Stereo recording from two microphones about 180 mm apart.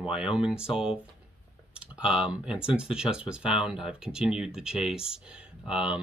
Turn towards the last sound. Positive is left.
turn(degrees=-5)  # may be behind; listen again after turning